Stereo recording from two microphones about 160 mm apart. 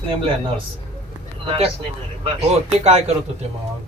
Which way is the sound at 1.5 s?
35° right (ahead or behind).